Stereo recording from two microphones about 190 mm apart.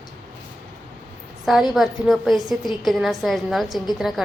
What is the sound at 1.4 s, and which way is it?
A woman's voice, centre (ahead or behind).